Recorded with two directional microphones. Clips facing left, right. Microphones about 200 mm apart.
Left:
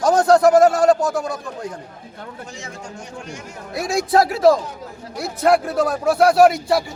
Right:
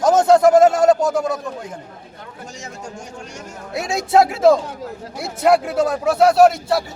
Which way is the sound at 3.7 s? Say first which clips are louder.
Right 1 dB; 20° right (ahead or behind).